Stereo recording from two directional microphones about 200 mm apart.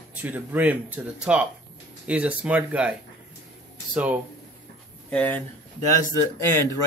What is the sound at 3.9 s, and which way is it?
Speech, 5° right (ahead or behind).